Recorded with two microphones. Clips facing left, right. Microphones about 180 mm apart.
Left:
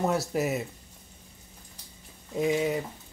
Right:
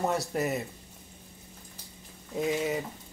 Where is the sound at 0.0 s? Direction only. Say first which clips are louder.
Left 2 dB; centre (ahead or behind).